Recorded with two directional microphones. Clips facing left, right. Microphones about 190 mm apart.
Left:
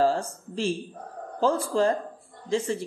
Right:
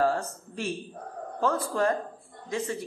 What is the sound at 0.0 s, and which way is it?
Speech, 30° left (ahead or behind).